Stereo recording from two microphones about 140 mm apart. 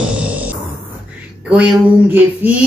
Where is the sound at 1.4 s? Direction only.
5° right (ahead or behind).